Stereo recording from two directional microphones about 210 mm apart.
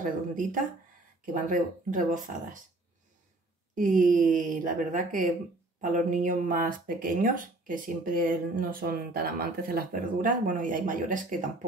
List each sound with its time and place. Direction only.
0.3 s speech: 40° right (ahead or behind)
3.7 s speech: 40° right (ahead or behind)